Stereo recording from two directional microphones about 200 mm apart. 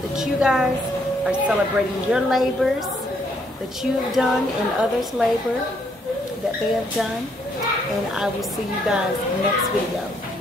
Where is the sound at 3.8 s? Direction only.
Centre (ahead or behind).